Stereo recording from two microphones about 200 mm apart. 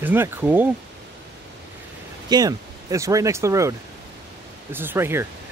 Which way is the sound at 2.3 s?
20° right (ahead or behind).